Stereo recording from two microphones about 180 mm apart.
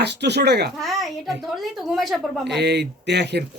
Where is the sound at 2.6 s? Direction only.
70° right (ahead or behind).